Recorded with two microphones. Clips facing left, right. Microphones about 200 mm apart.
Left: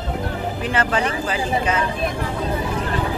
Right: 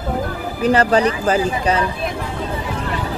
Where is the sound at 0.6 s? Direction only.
40° right (ahead or behind).